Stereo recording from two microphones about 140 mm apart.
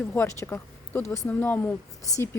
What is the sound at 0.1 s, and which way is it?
Speech, 20° left (ahead or behind).